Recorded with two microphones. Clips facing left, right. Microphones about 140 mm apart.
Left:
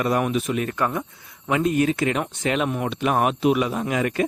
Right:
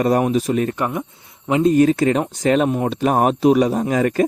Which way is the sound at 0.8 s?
20° right (ahead or behind).